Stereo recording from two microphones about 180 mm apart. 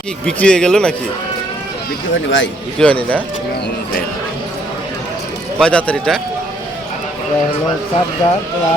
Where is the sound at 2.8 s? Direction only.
5° left (ahead or behind).